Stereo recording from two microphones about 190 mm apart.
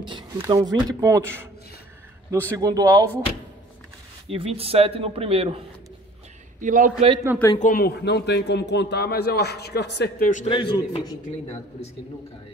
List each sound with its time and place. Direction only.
0.0 s speech: 25° right (ahead or behind)
4.3 s speech: 30° right (ahead or behind)
6.6 s a man's voice: 45° right (ahead or behind)
7.3 s speech: 10° right (ahead or behind)
7.6 s a man's voice: 50° left (ahead or behind)
10.5 s a man's voice: 25° left (ahead or behind)